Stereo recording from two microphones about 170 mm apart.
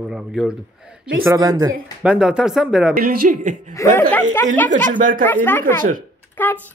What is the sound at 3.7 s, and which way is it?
Speech, 15° left (ahead or behind).